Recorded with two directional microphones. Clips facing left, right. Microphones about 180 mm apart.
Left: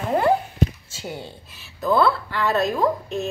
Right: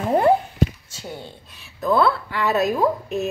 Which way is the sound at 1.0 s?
5° left (ahead or behind).